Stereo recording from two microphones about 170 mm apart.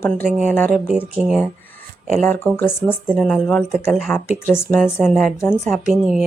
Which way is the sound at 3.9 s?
5° left (ahead or behind).